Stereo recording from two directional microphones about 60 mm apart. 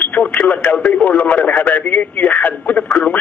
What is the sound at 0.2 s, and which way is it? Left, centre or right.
Radio, left.